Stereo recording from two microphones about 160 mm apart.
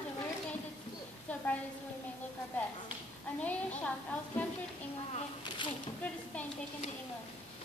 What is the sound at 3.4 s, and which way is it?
A woman's voice, 10° left (ahead or behind).